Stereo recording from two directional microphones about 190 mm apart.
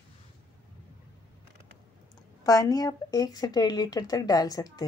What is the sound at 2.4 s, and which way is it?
A woman's voice, 20° left (ahead or behind).